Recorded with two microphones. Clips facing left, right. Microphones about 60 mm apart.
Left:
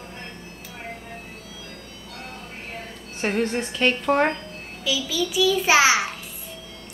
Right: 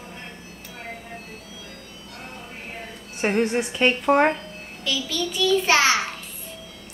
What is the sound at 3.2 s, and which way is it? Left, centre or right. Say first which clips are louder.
A woman's voice: right 2 dB; centre.